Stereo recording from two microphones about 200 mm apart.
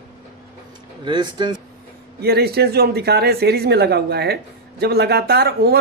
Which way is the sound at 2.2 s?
50° right (ahead or behind).